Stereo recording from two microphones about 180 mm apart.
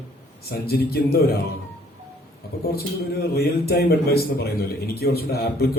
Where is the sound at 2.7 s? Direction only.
60° left (ahead or behind).